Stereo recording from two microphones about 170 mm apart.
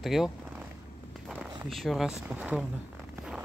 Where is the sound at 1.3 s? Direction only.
5° right (ahead or behind).